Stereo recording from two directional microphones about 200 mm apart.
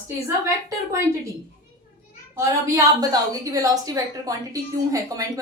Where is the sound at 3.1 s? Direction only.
20° right (ahead or behind).